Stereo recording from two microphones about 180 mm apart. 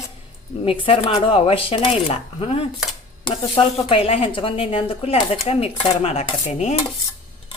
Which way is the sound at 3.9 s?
30° left (ahead or behind).